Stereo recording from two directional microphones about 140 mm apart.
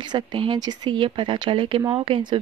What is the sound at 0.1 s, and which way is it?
Speech, 35° right (ahead or behind).